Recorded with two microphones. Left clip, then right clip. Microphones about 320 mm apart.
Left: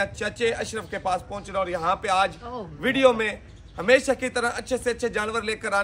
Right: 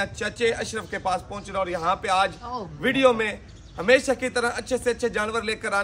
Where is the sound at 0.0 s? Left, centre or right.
Centre.